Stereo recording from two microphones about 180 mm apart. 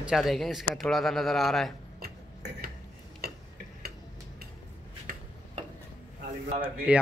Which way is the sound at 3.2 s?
60° right (ahead or behind).